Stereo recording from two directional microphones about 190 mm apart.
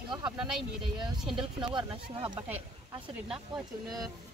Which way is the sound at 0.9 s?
25° right (ahead or behind).